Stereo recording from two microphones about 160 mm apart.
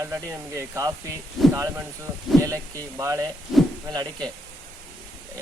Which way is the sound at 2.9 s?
20° right (ahead or behind).